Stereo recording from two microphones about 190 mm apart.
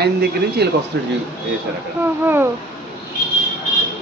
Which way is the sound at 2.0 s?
10° right (ahead or behind).